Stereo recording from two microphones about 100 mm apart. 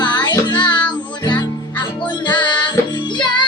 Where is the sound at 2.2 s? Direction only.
50° left (ahead or behind).